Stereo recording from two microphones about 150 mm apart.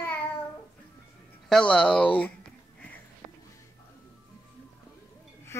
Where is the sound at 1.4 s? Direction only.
5° left (ahead or behind).